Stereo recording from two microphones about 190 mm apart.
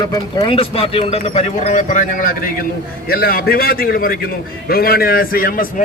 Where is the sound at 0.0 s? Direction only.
20° left (ahead or behind).